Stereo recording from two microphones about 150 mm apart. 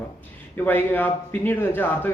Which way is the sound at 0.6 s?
10° left (ahead or behind).